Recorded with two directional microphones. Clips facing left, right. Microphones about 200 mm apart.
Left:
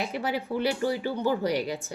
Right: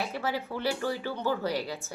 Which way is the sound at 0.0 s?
15° left (ahead or behind).